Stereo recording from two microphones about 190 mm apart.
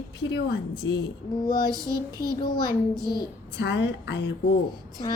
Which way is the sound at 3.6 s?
65° left (ahead or behind).